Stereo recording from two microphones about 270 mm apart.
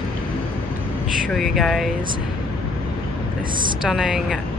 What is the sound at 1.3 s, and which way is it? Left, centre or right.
Speech, centre.